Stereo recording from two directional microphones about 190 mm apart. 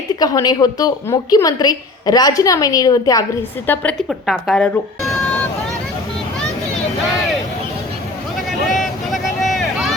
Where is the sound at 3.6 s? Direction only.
5° left (ahead or behind).